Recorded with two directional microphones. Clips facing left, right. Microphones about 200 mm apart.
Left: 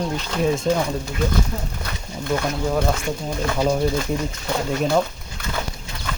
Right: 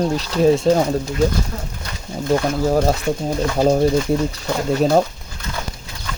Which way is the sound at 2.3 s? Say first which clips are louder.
Right 5 dB; 40° right (ahead or behind).